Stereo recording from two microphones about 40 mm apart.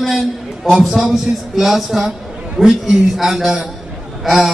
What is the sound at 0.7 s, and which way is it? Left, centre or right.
Speech, right.